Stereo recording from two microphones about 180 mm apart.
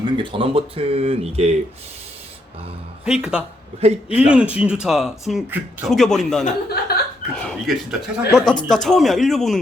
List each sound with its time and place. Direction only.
0.2 s speech: 25° right (ahead or behind)
3.0 s a man's voice: 5° right (ahead or behind)
3.8 s speech: 35° right (ahead or behind)
4.3 s a man's voice: 5° right (ahead or behind)
6.7 s speech: 60° left (ahead or behind)
7.3 s a man's voice: 5° left (ahead or behind)